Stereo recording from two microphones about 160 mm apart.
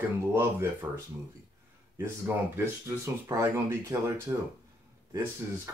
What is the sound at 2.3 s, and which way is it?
Speech, 15° right (ahead or behind).